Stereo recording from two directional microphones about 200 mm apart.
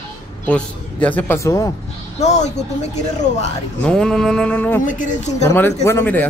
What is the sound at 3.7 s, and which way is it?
Music, 5° left (ahead or behind).